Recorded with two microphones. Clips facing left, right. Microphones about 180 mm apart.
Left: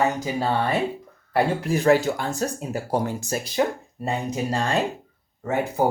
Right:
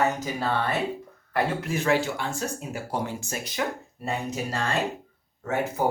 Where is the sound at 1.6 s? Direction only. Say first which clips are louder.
Left 6 dB; 35° left (ahead or behind).